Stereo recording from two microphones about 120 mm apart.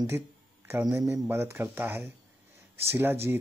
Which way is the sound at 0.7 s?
20° right (ahead or behind).